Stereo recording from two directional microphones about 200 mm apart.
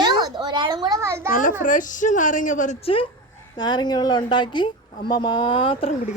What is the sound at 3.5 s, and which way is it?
A woman's voice, 20° left (ahead or behind).